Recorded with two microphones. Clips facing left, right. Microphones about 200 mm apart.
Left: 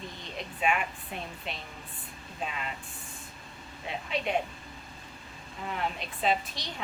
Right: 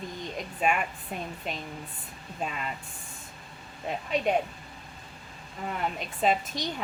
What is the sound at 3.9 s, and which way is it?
Speech, 40° right (ahead or behind).